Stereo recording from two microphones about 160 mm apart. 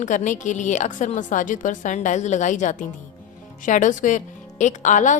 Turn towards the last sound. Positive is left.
turn(degrees=50)  # may be behind; listen again after turning